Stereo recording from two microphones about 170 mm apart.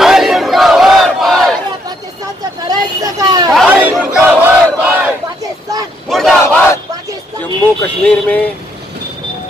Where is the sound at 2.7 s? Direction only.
20° right (ahead or behind).